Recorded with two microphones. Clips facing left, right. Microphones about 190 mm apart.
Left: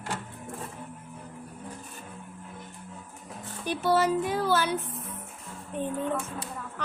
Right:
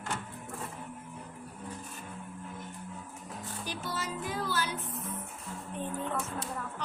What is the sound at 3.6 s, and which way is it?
Speech, 65° left (ahead or behind).